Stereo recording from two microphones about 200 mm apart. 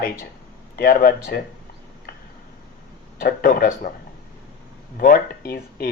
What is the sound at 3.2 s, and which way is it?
Speech, 50° left (ahead or behind).